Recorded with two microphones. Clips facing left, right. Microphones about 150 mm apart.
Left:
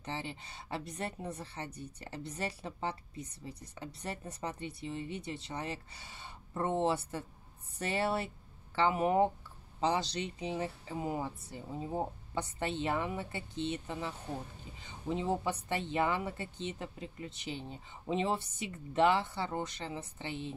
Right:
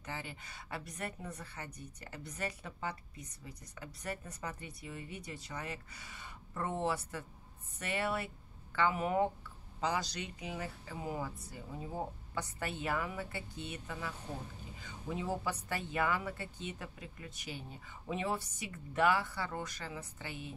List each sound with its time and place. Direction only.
0.0 s a woman's voice: 30° left (ahead or behind)